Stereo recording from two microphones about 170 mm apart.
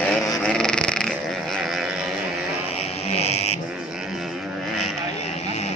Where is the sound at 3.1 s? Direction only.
40° left (ahead or behind).